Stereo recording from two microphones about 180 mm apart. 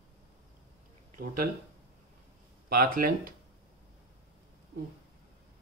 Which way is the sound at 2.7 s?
55° right (ahead or behind).